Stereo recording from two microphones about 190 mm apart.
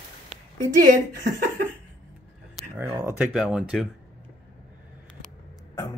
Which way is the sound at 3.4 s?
5° right (ahead or behind).